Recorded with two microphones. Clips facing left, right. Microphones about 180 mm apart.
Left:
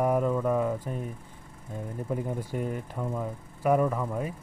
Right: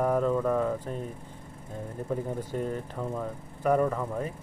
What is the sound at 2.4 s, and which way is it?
Speech, 10° left (ahead or behind).